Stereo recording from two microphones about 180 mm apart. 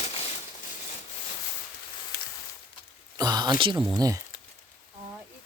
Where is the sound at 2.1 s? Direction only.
65° left (ahead or behind).